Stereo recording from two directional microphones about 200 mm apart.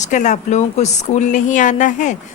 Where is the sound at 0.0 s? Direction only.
35° left (ahead or behind).